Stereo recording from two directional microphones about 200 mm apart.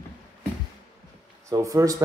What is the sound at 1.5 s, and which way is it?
Speech, 15° right (ahead or behind).